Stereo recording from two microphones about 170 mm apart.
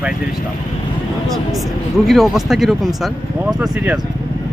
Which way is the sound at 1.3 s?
Centre (ahead or behind).